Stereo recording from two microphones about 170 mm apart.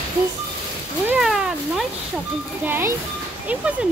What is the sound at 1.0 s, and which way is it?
Cat, 5° right (ahead or behind).